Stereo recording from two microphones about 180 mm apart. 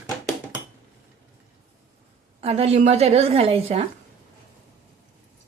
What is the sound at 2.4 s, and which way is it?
A woman's voice, 35° right (ahead or behind).